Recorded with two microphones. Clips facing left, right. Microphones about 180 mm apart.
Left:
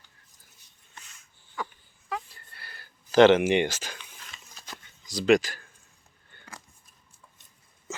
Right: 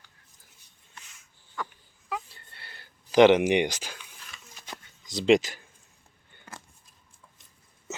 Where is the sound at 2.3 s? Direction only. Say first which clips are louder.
Left 1 dB; 25° right (ahead or behind).